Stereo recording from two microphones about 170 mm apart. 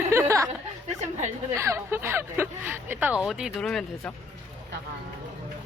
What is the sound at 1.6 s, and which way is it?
Speech, 15° right (ahead or behind).